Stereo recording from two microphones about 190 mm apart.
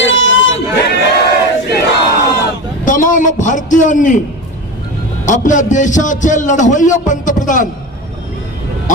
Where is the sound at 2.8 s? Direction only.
45° left (ahead or behind).